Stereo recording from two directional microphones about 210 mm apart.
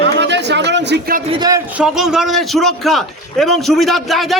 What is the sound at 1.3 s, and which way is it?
Speech, 20° right (ahead or behind).